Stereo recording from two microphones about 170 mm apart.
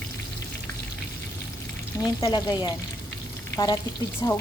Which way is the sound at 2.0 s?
25° left (ahead or behind).